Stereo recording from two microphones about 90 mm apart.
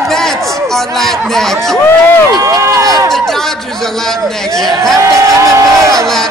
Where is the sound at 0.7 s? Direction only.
5° left (ahead or behind).